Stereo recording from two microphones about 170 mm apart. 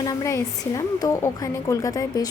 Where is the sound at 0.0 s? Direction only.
20° left (ahead or behind).